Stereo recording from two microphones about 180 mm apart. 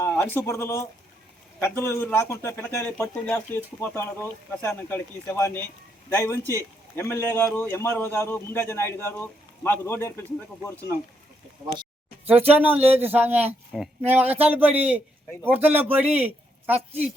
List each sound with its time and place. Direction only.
0.0 s a man's voice: 15° left (ahead or behind)
12.2 s speech: 35° right (ahead or behind)
12.5 s a man's voice: 10° right (ahead or behind)
16.7 s speech: 35° right (ahead or behind)